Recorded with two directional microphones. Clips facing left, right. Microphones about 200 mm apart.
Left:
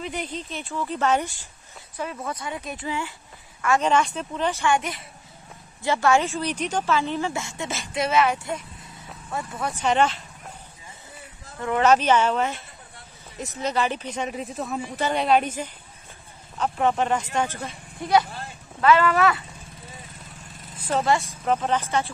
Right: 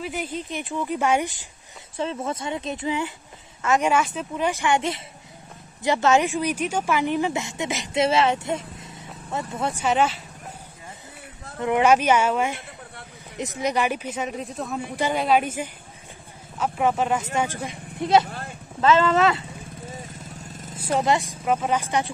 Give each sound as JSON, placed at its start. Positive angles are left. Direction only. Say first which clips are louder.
{"t": 0.0, "sound": "speech", "louder": "right 2 dB", "side_deg": -5}
{"t": 3.9, "sound": "speech", "louder": "even", "side_deg": -5}
{"t": 9.8, "sound": "speech", "louder": "left 1 dB", "side_deg": -5}
{"t": 11.6, "sound": "a woman's voice", "louder": "right 1 dB", "side_deg": -15}
{"t": 20.7, "sound": "a sound", "louder": "right 1 dB", "side_deg": -10}
{"t": 21.0, "sound": "speech", "louder": "even", "side_deg": -20}
{"t": 21.5, "sound": "speech", "louder": "even", "side_deg": -10}